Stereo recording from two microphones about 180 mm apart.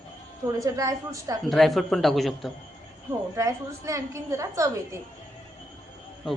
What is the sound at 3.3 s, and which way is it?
A woman's voice, 15° right (ahead or behind).